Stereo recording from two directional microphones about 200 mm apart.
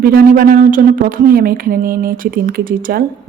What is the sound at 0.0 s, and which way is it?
A woman's voice, 50° right (ahead or behind).